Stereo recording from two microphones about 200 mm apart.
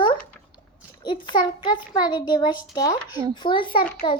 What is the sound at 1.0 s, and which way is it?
A child's voice, 25° left (ahead or behind).